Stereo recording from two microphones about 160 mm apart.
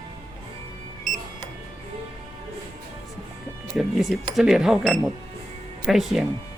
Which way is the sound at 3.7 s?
Centre (ahead or behind).